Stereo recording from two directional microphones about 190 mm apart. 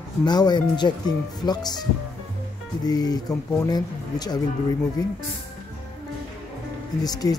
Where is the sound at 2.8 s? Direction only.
20° left (ahead or behind).